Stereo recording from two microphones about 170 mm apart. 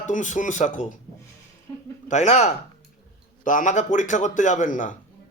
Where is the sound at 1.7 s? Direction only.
20° left (ahead or behind).